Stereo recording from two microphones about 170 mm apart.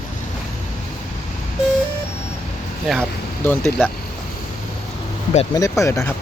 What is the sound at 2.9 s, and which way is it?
Speech, centre (ahead or behind).